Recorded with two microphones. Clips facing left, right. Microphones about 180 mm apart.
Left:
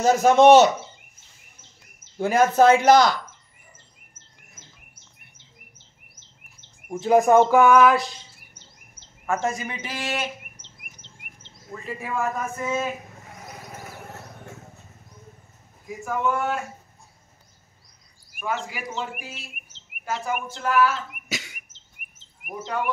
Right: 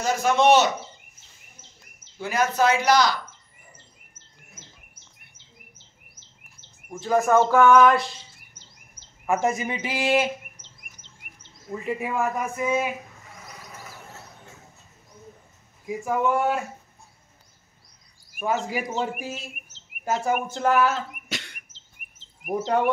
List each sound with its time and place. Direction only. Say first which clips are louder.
0.0 s speech: left 5 dB; 40° left (ahead or behind)
2.1 s speech: left 6 dB; 50° left (ahead or behind)
6.9 s speech: left 4 dB; 20° left (ahead or behind); by 8.1 s 5° left (ahead or behind)
9.2 s speech: right 2 dB; 15° right (ahead or behind)
11.7 s speech: right 3 dB; 15° right (ahead or behind)
13.5 s a sound: left 4 dB; 45° left (ahead or behind)
16.1 s speech: right 2 dB; 20° right (ahead or behind)
18.4 s speech: right 4 dB; 40° right (ahead or behind)
21.3 s a sound: left 1 dB; 5° left (ahead or behind)
22.5 s speech: right 6 dB; 35° right (ahead or behind)